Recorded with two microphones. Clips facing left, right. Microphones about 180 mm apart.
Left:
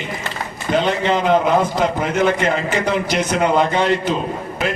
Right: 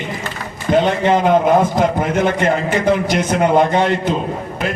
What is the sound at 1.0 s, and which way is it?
A man's voice, 50° right (ahead or behind).